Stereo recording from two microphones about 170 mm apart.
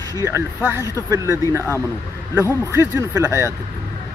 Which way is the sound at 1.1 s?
20° right (ahead or behind).